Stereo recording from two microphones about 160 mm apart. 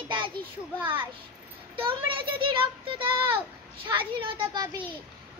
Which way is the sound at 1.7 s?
35° right (ahead or behind).